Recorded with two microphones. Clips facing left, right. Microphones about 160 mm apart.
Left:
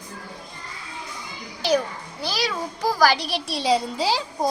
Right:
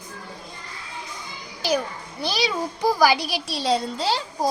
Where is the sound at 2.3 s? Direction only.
20° right (ahead or behind).